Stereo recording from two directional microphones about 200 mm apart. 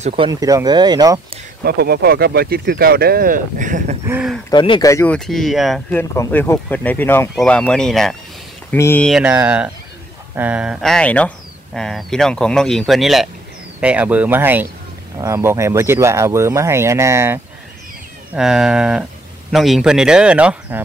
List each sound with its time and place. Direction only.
0.0 s speech: 30° right (ahead or behind)
0.3 s speech: 15° right (ahead or behind)
1.6 s speech: 50° right (ahead or behind)
4.1 s speech: 5° right (ahead or behind)
4.5 s speech: 25° left (ahead or behind); by 5.9 s centre (ahead or behind)
5.9 s speech: 15° left (ahead or behind)
9.1 s speech: 10° right (ahead or behind)
18.3 s speech: centre (ahead or behind)